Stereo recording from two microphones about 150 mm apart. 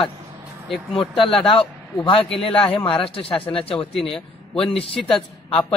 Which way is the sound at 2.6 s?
35° left (ahead or behind).